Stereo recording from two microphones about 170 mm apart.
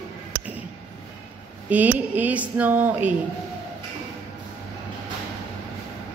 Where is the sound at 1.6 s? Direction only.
10° right (ahead or behind).